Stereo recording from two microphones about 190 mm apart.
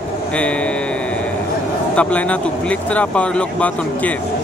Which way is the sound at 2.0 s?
5° left (ahead or behind).